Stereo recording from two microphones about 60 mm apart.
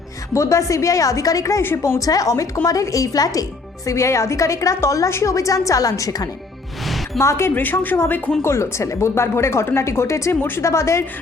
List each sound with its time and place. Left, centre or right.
0.3 s a woman's voice: left
3.8 s a woman's voice: left
7.2 s speech: left
7.5 s a woman's voice: left
8.4 s a woman's voice: left